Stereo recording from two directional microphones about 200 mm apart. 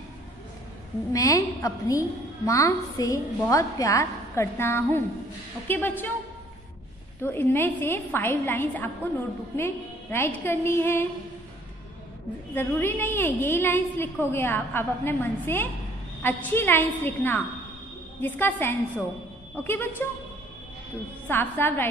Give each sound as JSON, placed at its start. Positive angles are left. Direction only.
{"t": 1.1, "sound": "a woman's voice", "side_deg": 15}
{"t": 7.2, "sound": "a woman's voice", "side_deg": 10}
{"t": 10.1, "sound": "a woman's voice", "side_deg": 10}
{"t": 12.5, "sound": "a woman's voice", "side_deg": 10}
{"t": 21.3, "sound": "a woman's voice", "side_deg": 10}